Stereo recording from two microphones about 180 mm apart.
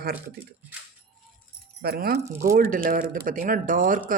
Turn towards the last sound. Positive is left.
turn(degrees=-50)  # may be behind; listen again after turning